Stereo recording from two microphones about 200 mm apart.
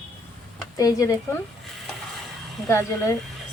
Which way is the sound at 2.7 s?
15° left (ahead or behind).